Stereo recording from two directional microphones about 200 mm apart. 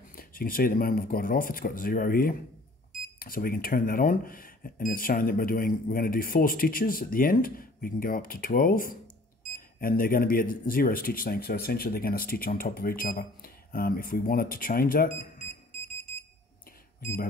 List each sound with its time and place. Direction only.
0.2 s speech: 45° left (ahead or behind)